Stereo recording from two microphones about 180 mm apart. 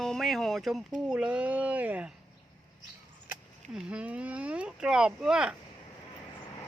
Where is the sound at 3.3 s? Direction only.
5° right (ahead or behind).